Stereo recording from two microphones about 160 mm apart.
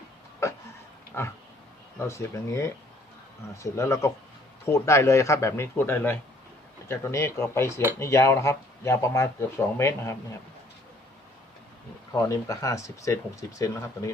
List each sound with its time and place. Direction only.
0.4 s a sound: 15° left (ahead or behind)
1.1 s speech: 15° left (ahead or behind)
12.1 s speech: 20° left (ahead or behind)